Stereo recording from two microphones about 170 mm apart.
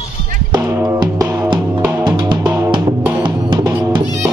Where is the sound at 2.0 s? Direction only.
25° right (ahead or behind).